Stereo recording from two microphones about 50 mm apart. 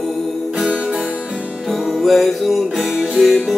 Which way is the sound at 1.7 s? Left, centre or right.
Centre.